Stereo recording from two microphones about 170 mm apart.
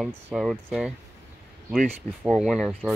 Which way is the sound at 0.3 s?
5° right (ahead or behind).